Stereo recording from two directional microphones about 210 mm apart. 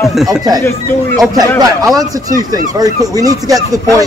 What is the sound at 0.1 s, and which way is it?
Speech, centre (ahead or behind).